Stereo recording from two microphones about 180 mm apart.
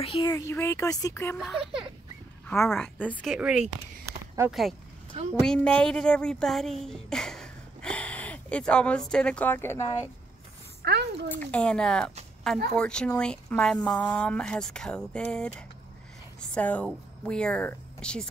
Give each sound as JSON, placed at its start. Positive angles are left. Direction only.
{"t": 0.0, "sound": "speech", "side_deg": 30}
{"t": 0.3, "sound": "speech", "side_deg": 15}
{"t": 1.4, "sound": "speech", "side_deg": -5}
{"t": 2.7, "sound": "speech", "side_deg": 5}
{"t": 3.2, "sound": "speech", "side_deg": -5}
{"t": 10.8, "sound": "a child's voice", "side_deg": -65}
{"t": 11.2, "sound": "speech", "side_deg": 10}